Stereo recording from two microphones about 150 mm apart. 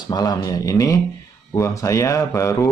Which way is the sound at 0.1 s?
25° left (ahead or behind).